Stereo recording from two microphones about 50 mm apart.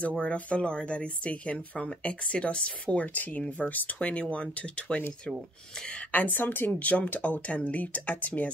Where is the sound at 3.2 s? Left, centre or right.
Left.